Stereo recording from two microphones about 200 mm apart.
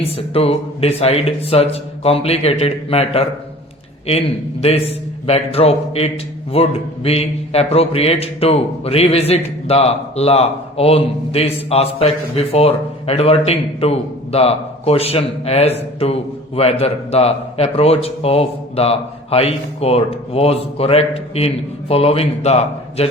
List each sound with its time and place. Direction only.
0.0 s a man's voice: 30° left (ahead or behind)
4.6 s a man's voice: 30° left (ahead or behind)